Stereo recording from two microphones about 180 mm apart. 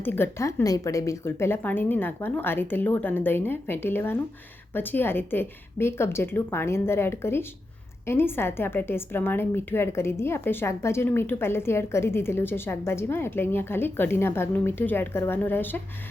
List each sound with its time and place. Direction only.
0.0 s a woman's voice: 10° left (ahead or behind)